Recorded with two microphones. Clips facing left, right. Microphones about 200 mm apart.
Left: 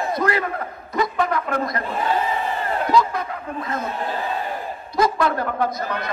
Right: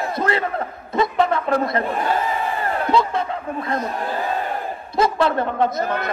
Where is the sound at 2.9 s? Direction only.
30° right (ahead or behind).